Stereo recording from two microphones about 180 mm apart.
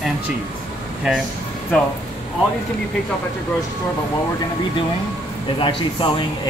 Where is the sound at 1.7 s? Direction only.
5° left (ahead or behind).